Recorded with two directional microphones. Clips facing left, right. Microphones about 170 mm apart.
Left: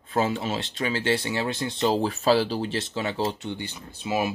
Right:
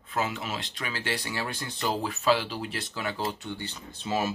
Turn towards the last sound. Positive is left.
turn(degrees=10)  # may be behind; listen again after turning